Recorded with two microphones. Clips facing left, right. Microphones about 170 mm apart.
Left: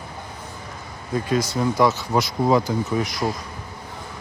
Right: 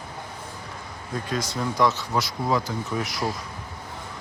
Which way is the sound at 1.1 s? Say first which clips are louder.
Left 6 dB; 5° left (ahead or behind).